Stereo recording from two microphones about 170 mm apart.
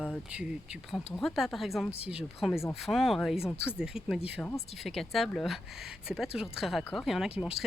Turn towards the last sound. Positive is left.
turn(degrees=-5)  # may be behind; listen again after turning